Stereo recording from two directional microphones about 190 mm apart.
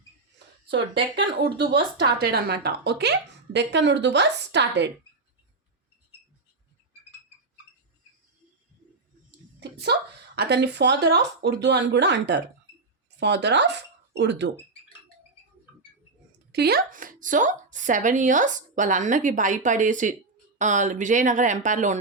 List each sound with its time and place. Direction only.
1.1 s a woman's voice: 60° right (ahead or behind)
9.6 s a woman's voice: 60° right (ahead or behind)
16.5 s speech: 60° right (ahead or behind); by 21.9 s 40° right (ahead or behind)